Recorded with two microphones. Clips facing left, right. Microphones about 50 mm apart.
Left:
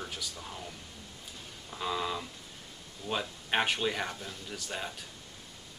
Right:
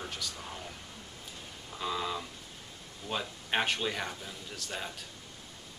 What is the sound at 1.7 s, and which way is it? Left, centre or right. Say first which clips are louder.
Speech: left 1 dB; centre.